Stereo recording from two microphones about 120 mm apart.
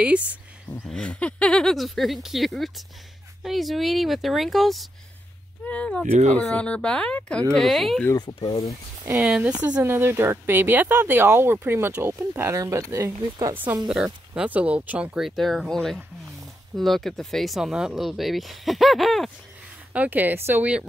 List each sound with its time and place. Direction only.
0.0 s a woman's voice: 10° right (ahead or behind)
0.8 s speech: 5° left (ahead or behind)
8.5 s speech: 35° left (ahead or behind)
9.2 s a woman's voice: 10° right (ahead or behind); by 13.6 s 25° right (ahead or behind)
13.8 s a woman's voice: 5° right (ahead or behind)
19.9 s a woman's voice: 15° right (ahead or behind)